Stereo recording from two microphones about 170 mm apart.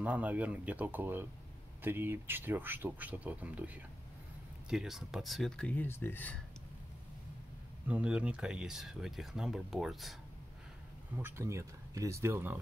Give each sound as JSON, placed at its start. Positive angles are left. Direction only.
{"t": 0.0, "sound": "speech", "side_deg": -10}
{"t": 7.9, "sound": "speech", "side_deg": -5}
{"t": 11.1, "sound": "speech", "side_deg": -15}